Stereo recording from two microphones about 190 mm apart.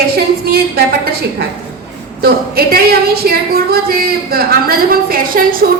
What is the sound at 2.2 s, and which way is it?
A woman's voice, 55° right (ahead or behind).